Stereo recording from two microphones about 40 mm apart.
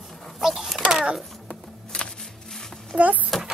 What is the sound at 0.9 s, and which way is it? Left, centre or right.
Speech, centre.